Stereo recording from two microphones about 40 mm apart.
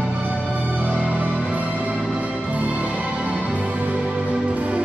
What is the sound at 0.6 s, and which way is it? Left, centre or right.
Music, right.